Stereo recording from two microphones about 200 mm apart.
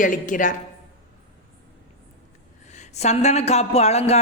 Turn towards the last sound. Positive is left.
turn(degrees=30)  # may be behind; listen again after turning